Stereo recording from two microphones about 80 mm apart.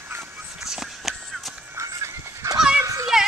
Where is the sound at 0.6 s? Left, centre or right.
Centre.